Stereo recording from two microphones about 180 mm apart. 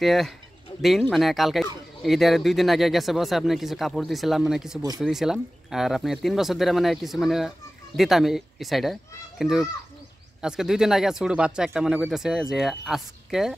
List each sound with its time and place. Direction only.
0.0 s speech: centre (ahead or behind)
0.7 s bird: 30° left (ahead or behind)
1.1 s speech: centre (ahead or behind)